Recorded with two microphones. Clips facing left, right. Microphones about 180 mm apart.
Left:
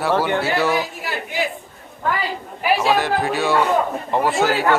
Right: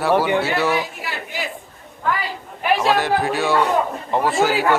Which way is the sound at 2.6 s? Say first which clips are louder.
Even; centre (ahead or behind).